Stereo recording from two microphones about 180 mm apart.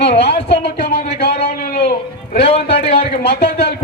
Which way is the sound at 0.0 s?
70° left (ahead or behind).